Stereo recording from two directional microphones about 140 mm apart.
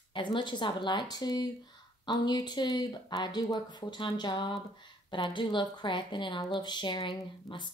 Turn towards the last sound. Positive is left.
turn(degrees=35)  # may be behind; listen again after turning